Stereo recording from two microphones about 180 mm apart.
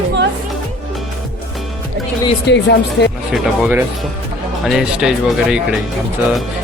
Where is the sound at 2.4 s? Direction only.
70° left (ahead or behind).